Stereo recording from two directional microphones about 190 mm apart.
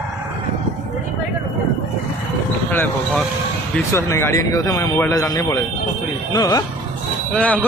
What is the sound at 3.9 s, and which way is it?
Speech, 15° left (ahead or behind).